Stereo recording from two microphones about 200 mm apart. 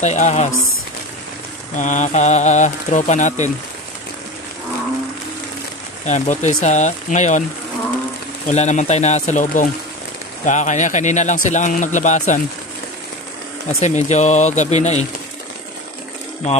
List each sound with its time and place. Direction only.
0.0 s speech: 35° left (ahead or behind)
1.8 s speech: 35° left (ahead or behind)
6.0 s speech: 35° left (ahead or behind)
8.5 s speech: 35° left (ahead or behind)
13.7 s speech: 35° left (ahead or behind)